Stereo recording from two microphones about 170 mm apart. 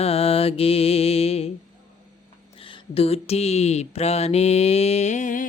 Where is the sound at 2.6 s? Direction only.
35° left (ahead or behind).